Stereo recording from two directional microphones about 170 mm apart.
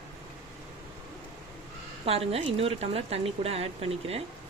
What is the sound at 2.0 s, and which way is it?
Speech, 35° right (ahead or behind).